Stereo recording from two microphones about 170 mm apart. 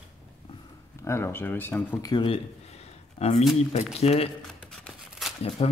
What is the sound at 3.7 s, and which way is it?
Speech, 40° left (ahead or behind).